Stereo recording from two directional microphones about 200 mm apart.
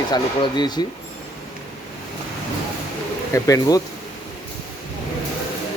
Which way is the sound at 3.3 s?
15° left (ahead or behind).